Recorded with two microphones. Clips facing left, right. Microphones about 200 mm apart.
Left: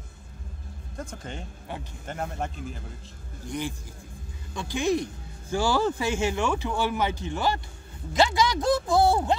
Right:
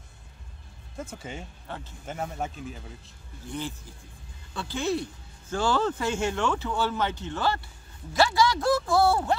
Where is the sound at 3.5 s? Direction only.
15° left (ahead or behind).